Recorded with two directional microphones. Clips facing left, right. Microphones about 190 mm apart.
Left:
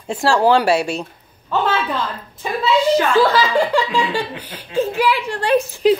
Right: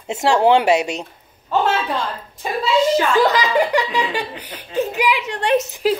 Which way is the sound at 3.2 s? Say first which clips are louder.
Left 1 dB; 20° right (ahead or behind).